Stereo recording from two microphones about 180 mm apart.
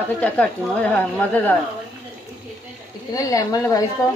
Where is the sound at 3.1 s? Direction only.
20° left (ahead or behind).